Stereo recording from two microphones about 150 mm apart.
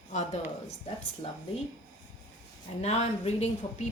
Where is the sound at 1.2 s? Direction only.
35° left (ahead or behind).